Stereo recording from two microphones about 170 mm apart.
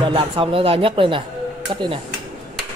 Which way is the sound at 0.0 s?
30° right (ahead or behind).